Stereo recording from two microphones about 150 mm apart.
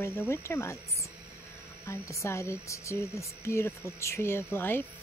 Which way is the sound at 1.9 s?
20° left (ahead or behind).